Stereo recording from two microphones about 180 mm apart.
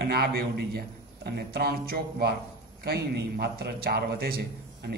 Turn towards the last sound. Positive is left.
turn(degrees=-60)  # may be behind; listen again after turning